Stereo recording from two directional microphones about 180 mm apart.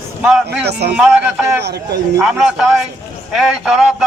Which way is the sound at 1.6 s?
65° right (ahead or behind).